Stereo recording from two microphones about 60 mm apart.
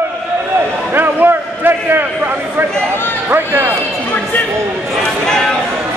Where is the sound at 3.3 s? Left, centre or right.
Right.